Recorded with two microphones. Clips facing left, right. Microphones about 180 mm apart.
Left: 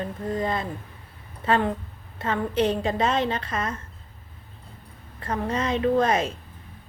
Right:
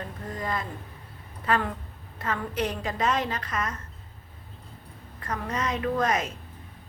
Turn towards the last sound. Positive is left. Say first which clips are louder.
# left 5 dB
turn(degrees=30)  # may be behind; listen again after turning